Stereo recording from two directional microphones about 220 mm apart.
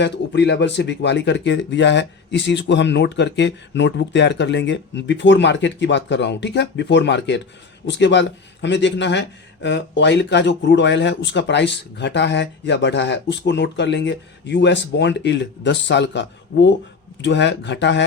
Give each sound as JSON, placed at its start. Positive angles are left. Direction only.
{"t": 0.0, "sound": "speech", "side_deg": 50}